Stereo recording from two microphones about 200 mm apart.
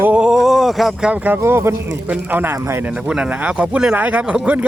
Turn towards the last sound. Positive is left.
turn(degrees=-5)  # may be behind; listen again after turning